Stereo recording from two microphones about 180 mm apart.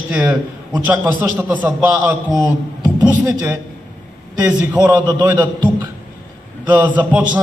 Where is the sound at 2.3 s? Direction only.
25° right (ahead or behind).